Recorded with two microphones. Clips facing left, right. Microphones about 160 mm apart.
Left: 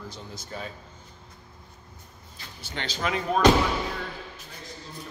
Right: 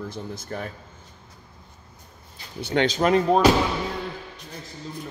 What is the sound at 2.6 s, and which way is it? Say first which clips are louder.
Speech: right 11 dB; 60° right (ahead or behind).